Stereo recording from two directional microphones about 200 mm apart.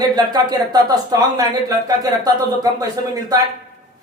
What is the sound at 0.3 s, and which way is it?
A man's voice, 20° right (ahead or behind).